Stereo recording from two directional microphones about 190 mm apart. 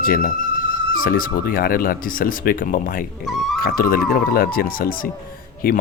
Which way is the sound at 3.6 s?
50° left (ahead or behind).